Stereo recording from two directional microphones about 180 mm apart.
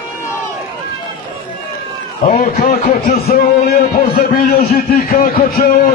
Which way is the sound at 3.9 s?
45° left (ahead or behind).